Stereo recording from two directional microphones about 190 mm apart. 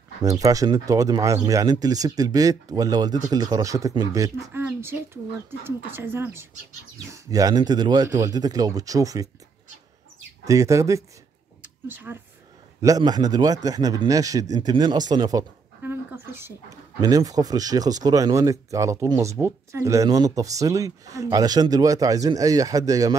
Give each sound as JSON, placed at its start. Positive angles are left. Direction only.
{"t": 0.2, "sound": "speech", "side_deg": -20}
{"t": 10.4, "sound": "speech", "side_deg": -15}
{"t": 15.8, "sound": "a sound", "side_deg": -10}
{"t": 17.0, "sound": "speech", "side_deg": -20}